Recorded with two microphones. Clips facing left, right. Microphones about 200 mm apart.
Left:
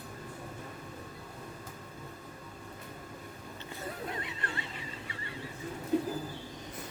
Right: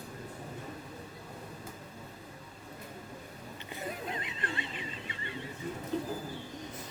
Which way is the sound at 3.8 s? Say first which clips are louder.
Even; 20° right (ahead or behind).